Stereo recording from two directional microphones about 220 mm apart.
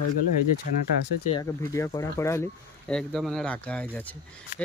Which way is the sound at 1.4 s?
15° left (ahead or behind).